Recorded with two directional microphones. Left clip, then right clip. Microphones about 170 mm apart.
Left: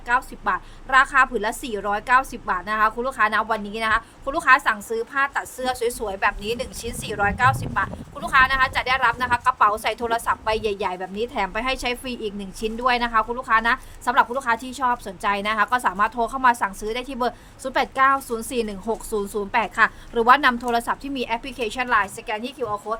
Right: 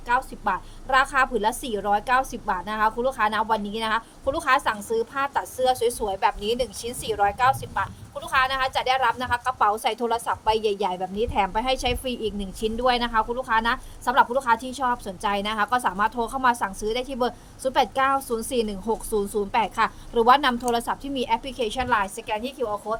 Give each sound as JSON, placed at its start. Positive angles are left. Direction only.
{"t": 0.1, "sound": "a woman's voice", "side_deg": 20}